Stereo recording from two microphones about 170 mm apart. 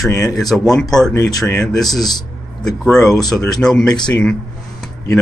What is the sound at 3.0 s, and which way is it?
Speech, 20° left (ahead or behind).